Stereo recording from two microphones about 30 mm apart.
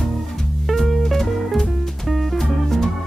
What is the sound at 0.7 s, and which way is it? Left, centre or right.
Music, centre.